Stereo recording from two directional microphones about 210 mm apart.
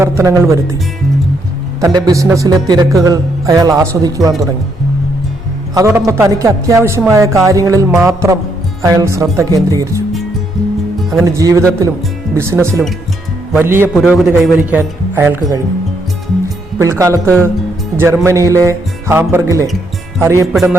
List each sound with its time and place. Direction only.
0.0 s speech: 15° right (ahead or behind)
1.8 s speech: 15° right (ahead or behind)
5.7 s a man's voice: 15° right (ahead or behind)
11.3 s speech: 15° right (ahead or behind)
16.7 s speech: 15° right (ahead or behind)